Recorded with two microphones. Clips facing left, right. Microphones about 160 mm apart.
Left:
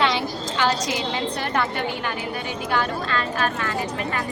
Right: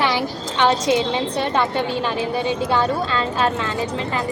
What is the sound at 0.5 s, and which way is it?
A woman's voice, 25° right (ahead or behind).